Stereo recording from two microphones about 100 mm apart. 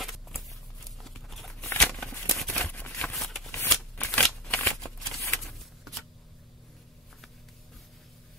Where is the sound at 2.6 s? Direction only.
15° left (ahead or behind).